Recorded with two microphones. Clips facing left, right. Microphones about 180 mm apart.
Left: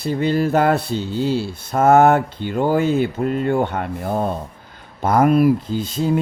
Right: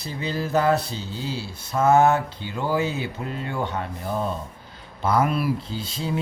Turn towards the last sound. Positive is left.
turn(degrees=50)  # may be behind; listen again after turning